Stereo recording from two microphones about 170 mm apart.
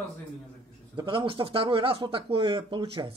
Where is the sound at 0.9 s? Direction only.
30° right (ahead or behind).